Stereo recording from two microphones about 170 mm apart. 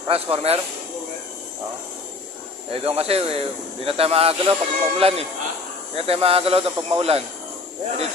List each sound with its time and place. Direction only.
0.1 s speech: 35° right (ahead or behind)
2.7 s speech: 35° right (ahead or behind)